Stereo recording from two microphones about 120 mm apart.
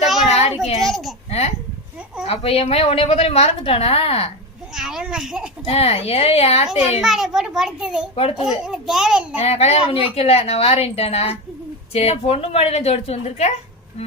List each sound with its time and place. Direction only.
0.3 s child singing: 60° left (ahead or behind)
0.8 s a child's voice: centre (ahead or behind)
1.3 s a child's voice: 65° left (ahead or behind)
4.7 s a child's voice: 5° right (ahead or behind)
5.6 s a woman's voice: 55° left (ahead or behind)
7.0 s a child's voice: 5° right (ahead or behind)
8.1 s a woman's voice: 55° left (ahead or behind)
8.4 s a child's voice: 5° right (ahead or behind)
9.4 s a woman's voice: 60° left (ahead or behind)